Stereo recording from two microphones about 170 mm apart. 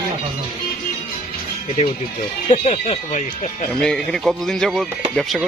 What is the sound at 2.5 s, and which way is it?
Speech, 35° left (ahead or behind).